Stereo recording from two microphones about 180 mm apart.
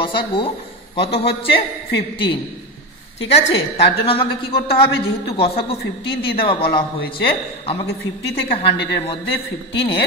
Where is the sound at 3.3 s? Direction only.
35° left (ahead or behind).